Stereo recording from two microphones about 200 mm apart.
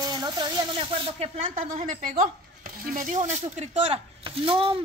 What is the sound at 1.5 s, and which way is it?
A woman's voice, 40° right (ahead or behind).